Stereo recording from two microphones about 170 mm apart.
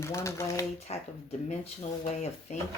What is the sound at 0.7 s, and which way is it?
Speech, 40° left (ahead or behind).